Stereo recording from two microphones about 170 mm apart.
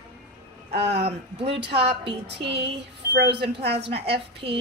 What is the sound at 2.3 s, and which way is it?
Music, 90° right.